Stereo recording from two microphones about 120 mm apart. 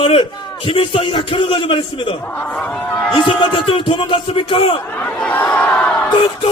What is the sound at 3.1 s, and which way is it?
Speech, 45° left (ahead or behind).